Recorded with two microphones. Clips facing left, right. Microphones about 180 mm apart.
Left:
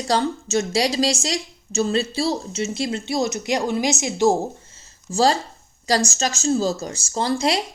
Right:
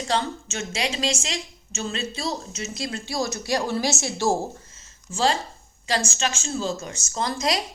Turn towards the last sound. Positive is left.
turn(degrees=30)  # may be behind; listen again after turning